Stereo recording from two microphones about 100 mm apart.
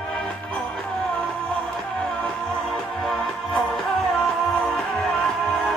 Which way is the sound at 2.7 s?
5° left (ahead or behind).